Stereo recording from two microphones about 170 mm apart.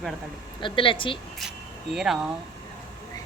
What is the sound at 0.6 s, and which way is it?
Speech, 30° left (ahead or behind).